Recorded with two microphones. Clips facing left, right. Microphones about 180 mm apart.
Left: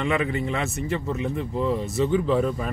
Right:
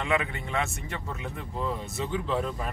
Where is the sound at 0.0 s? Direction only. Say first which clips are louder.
Left 5 dB; centre (ahead or behind).